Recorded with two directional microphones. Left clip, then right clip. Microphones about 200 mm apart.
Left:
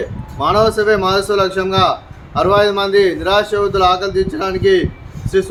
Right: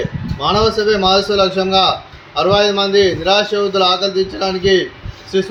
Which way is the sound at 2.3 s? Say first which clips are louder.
Left 1 dB; 20° left (ahead or behind).